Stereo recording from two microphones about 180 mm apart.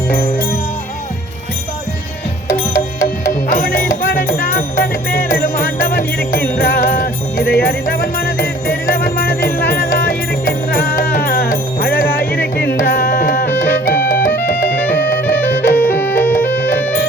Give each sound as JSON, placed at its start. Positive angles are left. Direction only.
{"t": 2.5, "sound": "music", "side_deg": 15}
{"t": 3.5, "sound": "music", "side_deg": 55}
{"t": 10.7, "sound": "jingle bell", "side_deg": 55}
{"t": 12.8, "sound": "music", "side_deg": 55}
{"t": 14.7, "sound": "music", "side_deg": 10}